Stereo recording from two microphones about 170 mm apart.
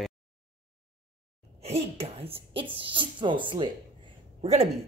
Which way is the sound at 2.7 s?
30° right (ahead or behind).